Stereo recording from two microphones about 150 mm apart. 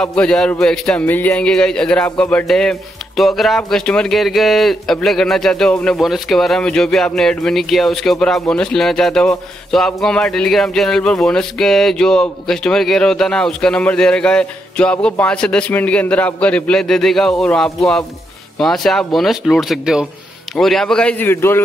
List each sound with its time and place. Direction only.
0.0 s speech: 5° left (ahead or behind)